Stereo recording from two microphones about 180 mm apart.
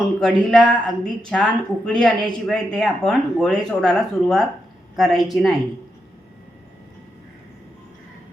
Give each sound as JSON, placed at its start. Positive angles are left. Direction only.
{"t": 0.2, "sound": "speech", "side_deg": 5}